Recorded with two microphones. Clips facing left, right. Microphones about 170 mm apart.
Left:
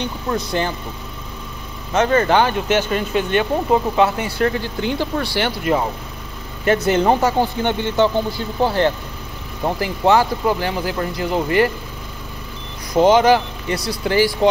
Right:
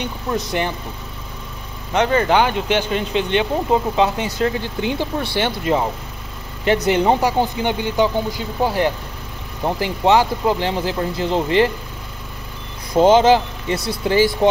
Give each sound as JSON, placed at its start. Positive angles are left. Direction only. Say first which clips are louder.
{"t": 0.3, "sound": "speech", "louder": "even", "side_deg": -15}
{"t": 2.0, "sound": "speech", "louder": "left 1 dB", "side_deg": -15}
{"t": 13.0, "sound": "speech", "louder": "right 1 dB", "side_deg": -25}